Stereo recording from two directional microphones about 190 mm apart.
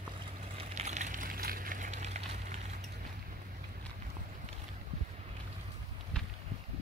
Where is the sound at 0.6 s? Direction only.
40° right (ahead or behind).